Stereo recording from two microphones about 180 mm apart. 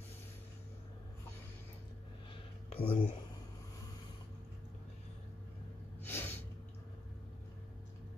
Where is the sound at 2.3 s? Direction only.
30° left (ahead or behind).